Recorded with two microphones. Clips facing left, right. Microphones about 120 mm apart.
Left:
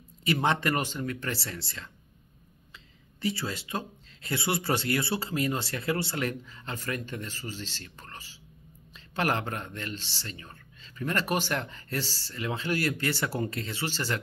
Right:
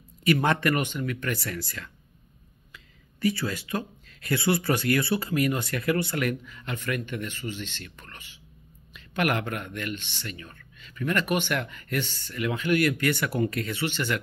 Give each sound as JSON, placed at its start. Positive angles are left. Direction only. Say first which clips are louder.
{"t": 0.2, "sound": "speech", "louder": "right 3 dB", "side_deg": 25}
{"t": 3.2, "sound": "speech", "louder": "right 5 dB", "side_deg": 25}